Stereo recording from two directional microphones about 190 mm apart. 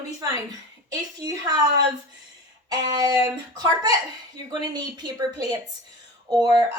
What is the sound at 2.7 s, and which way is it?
Speech, 20° right (ahead or behind).